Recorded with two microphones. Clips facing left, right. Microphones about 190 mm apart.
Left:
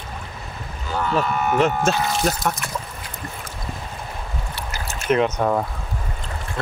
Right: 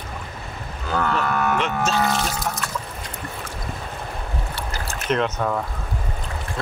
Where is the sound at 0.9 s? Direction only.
65° right (ahead or behind).